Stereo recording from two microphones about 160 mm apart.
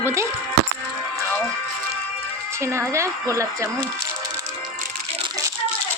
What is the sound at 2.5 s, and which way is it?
A woman's voice, 15° right (ahead or behind).